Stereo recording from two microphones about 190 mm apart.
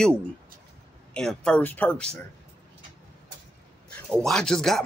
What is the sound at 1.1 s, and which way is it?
Speech, 5° left (ahead or behind).